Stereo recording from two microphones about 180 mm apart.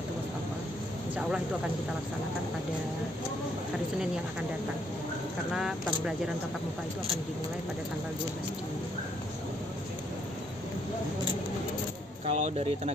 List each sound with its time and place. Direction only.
5.5 s speech: 5° right (ahead or behind)
12.3 s speech: 35° right (ahead or behind)